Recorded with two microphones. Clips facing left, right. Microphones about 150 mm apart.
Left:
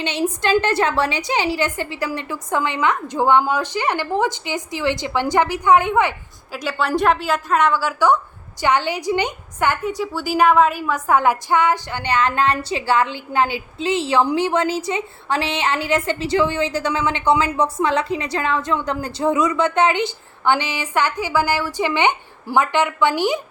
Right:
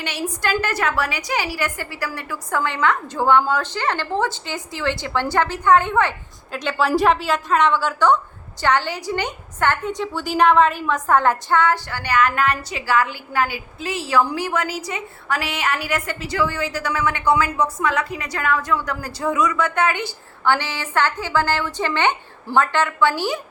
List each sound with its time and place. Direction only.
0.0 s a woman's voice: 20° left (ahead or behind)